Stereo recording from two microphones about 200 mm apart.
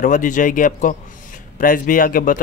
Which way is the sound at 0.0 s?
40° left (ahead or behind).